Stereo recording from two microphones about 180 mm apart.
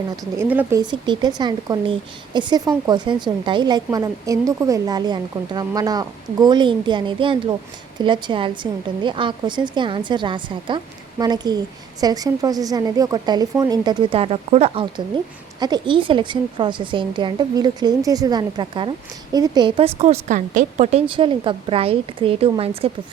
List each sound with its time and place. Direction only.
0.3 s speech: 10° right (ahead or behind)
0.8 s a woman's voice: 25° right (ahead or behind)